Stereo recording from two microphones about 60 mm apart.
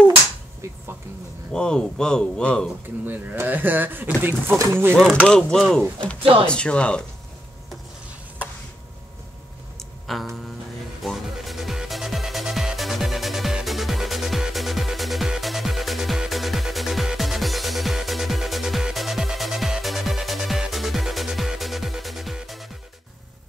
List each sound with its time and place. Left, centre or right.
1.5 s speech: centre
3.4 s speech: right
5.1 s speech: centre
5.6 s speech: centre
5.9 s speech: centre
9.8 s a sound: centre
11.1 s music: centre